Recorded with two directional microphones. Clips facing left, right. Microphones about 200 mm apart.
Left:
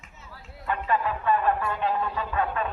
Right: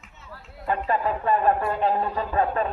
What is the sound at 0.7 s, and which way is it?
Speech, 35° right (ahead or behind).